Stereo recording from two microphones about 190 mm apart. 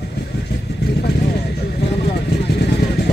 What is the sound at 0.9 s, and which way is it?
Vehicle, 60° left (ahead or behind).